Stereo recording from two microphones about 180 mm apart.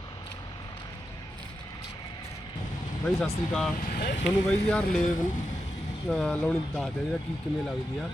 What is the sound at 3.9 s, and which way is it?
Speech, 55° left (ahead or behind).